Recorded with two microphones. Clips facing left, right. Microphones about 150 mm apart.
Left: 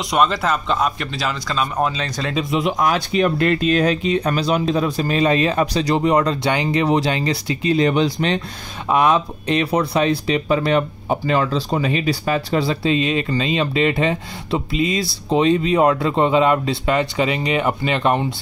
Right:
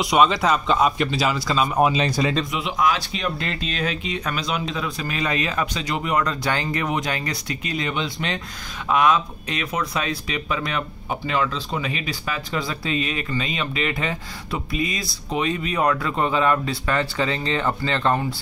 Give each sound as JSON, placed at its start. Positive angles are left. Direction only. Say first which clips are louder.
{"t": 0.0, "sound": "speech", "louder": "even", "side_deg": 0}
{"t": 2.5, "sound": "speech", "louder": "left 4 dB", "side_deg": 45}
{"t": 7.9, "sound": "speech", "louder": "left 8 dB", "side_deg": 40}
{"t": 8.8, "sound": "speech", "louder": "left 3 dB", "side_deg": 25}